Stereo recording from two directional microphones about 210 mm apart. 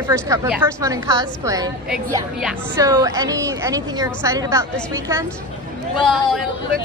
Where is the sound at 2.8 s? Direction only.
15° right (ahead or behind).